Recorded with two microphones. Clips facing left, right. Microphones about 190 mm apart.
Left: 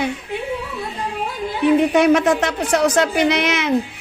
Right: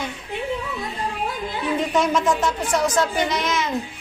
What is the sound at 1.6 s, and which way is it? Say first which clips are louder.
A woman's voice: left 8 dB; 65° left (ahead or behind).